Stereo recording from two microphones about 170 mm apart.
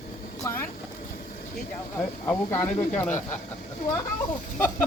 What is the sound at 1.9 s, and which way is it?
Speech, 15° left (ahead or behind).